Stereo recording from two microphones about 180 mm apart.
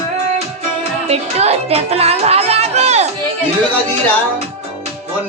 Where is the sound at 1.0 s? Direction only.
35° right (ahead or behind).